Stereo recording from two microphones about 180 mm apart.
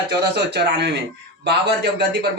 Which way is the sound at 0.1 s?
65° right (ahead or behind).